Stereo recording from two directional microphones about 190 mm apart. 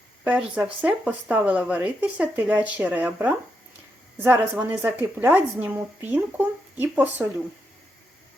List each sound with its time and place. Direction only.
0.3 s speech: 5° right (ahead or behind)